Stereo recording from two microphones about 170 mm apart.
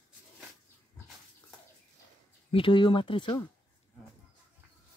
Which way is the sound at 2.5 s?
30° left (ahead or behind).